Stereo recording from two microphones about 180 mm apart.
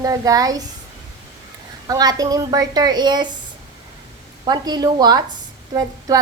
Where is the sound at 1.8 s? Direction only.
20° right (ahead or behind).